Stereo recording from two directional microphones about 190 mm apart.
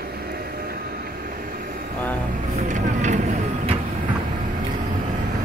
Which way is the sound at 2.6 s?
40° right (ahead or behind).